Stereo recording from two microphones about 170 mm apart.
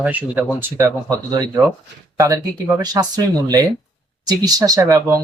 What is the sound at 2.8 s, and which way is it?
Speech, 20° right (ahead or behind).